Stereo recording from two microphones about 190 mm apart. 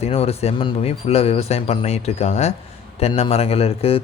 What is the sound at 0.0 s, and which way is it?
Speech, 30° left (ahead or behind).